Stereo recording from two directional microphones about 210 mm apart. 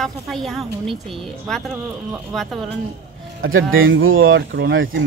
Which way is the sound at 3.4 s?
70° right (ahead or behind).